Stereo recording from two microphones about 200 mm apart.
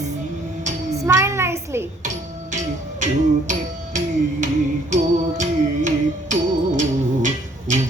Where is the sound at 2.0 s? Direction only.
40° right (ahead or behind).